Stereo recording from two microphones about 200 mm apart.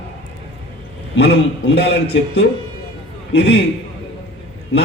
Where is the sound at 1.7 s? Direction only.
60° left (ahead or behind).